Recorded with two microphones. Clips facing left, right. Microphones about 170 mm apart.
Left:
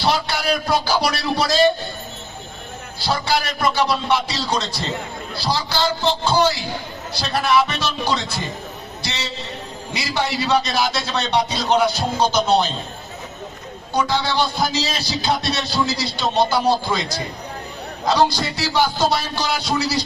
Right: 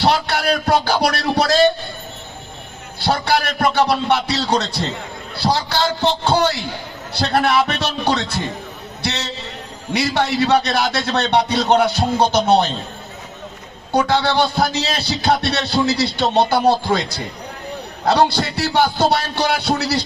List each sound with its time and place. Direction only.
0.0 s speech: 60° right (ahead or behind)
3.0 s a man's voice: 60° right (ahead or behind)
13.9 s speech: 60° right (ahead or behind)
18.0 s speech: 65° right (ahead or behind)